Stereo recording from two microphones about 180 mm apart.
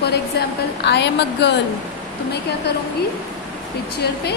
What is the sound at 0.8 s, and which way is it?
Speech, 70° left (ahead or behind).